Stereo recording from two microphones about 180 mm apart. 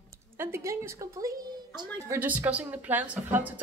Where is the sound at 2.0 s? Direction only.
10° right (ahead or behind).